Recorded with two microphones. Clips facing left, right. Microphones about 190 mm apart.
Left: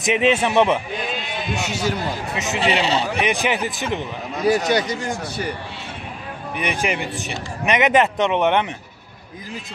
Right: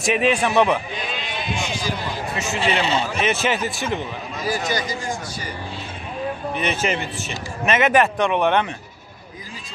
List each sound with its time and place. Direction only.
0.0 s a man's voice: 20° left (ahead or behind)
1.6 s a man's voice: 70° left (ahead or behind)
2.3 s a man's voice: 20° left (ahead or behind)
4.4 s a man's voice: 65° left (ahead or behind)
6.5 s speech: 15° left (ahead or behind)